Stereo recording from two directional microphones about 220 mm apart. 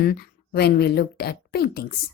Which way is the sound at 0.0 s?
45° left (ahead or behind).